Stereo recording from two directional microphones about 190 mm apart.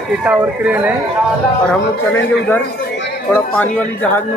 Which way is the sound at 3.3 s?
10° left (ahead or behind).